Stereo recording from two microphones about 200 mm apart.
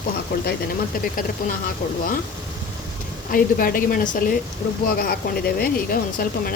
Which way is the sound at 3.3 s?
45° left (ahead or behind).